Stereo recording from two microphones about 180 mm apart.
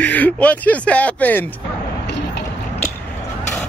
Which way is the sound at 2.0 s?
70° left (ahead or behind).